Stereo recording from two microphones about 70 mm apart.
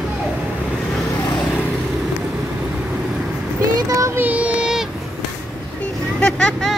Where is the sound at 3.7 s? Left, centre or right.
Right.